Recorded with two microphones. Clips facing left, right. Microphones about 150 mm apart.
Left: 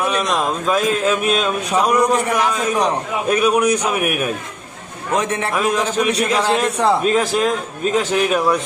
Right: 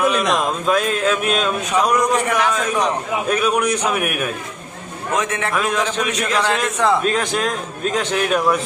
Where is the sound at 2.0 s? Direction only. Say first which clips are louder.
Left 1 dB; 35° left (ahead or behind).